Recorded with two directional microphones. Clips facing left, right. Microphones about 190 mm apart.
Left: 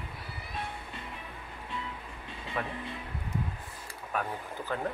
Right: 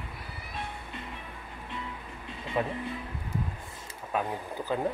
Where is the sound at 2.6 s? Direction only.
25° right (ahead or behind).